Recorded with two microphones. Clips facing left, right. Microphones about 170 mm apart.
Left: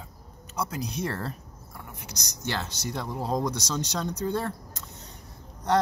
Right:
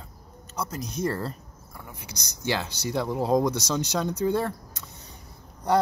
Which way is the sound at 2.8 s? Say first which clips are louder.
Right 7 dB; 10° right (ahead or behind).